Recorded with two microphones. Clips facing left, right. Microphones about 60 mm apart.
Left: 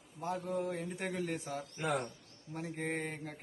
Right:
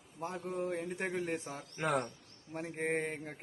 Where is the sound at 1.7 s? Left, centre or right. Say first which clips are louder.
Right 3 dB; right.